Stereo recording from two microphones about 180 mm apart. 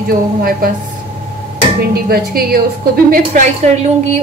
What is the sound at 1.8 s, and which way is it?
A woman's voice, 60° right (ahead or behind).